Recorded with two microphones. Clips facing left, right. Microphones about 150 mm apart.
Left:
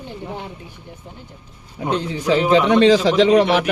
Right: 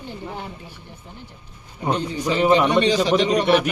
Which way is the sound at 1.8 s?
90° left.